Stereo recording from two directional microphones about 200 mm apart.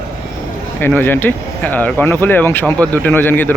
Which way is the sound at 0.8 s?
10° left (ahead or behind).